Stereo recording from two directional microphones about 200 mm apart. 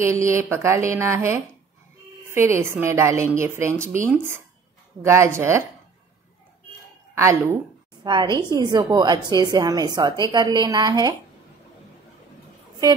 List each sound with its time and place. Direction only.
0.0 s a woman's voice: 15° right (ahead or behind)
7.2 s a woman's voice: 15° right (ahead or behind)